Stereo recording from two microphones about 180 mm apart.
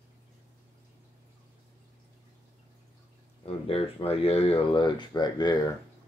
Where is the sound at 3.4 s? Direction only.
30° left (ahead or behind).